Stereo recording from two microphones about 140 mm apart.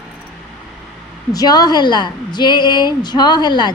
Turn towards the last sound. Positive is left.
turn(degrees=30)  # may be behind; listen again after turning